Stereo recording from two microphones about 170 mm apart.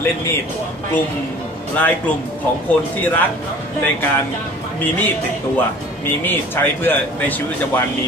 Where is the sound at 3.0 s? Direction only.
10° left (ahead or behind).